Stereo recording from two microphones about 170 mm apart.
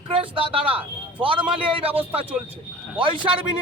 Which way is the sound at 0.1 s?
30° right (ahead or behind).